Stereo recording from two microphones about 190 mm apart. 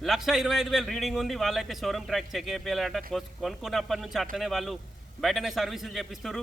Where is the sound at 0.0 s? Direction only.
Centre (ahead or behind).